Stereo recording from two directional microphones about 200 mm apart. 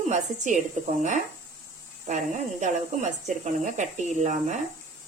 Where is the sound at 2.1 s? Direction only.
40° right (ahead or behind).